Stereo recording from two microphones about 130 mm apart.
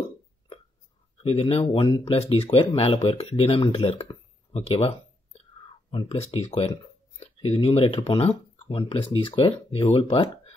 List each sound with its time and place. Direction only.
1.2 s speech: 50° left (ahead or behind)